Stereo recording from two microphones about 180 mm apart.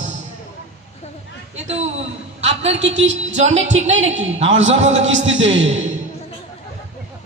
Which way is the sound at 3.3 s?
40° right (ahead or behind).